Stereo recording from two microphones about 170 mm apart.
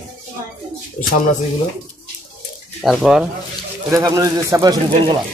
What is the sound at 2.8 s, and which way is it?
Speech, centre (ahead or behind).